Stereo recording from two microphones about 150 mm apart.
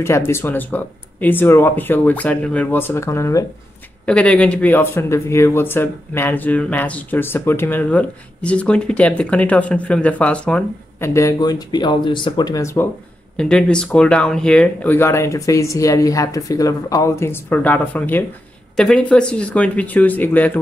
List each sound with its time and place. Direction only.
0.0 s speech: 15° left (ahead or behind)
4.0 s speech: 5° left (ahead or behind)
11.1 s speech: 25° left (ahead or behind)
13.4 s speech: 5° left (ahead or behind)